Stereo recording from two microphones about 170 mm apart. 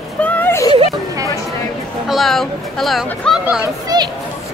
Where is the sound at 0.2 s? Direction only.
10° left (ahead or behind).